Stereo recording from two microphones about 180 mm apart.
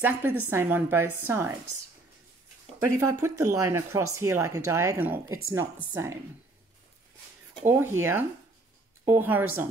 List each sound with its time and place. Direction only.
0.0 s speech: 10° right (ahead or behind)
2.8 s speech: 15° right (ahead or behind)
7.6 s speech: 15° right (ahead or behind)